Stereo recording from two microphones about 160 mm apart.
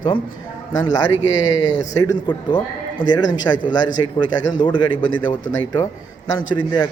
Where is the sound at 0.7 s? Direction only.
25° left (ahead or behind).